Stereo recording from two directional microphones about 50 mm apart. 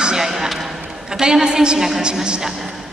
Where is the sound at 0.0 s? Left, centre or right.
Centre.